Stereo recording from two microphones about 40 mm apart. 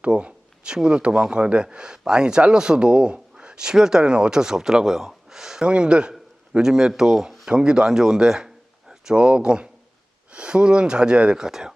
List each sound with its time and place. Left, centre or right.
0.0 s speech: right; by 5.6 s centre
5.6 s speech: right